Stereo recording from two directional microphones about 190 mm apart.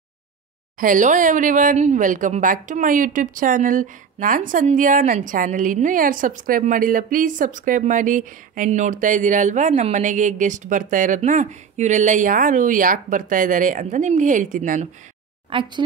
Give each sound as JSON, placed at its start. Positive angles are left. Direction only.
{"t": 0.7, "sound": "speech", "side_deg": -45}
{"t": 15.5, "sound": "speech", "side_deg": -25}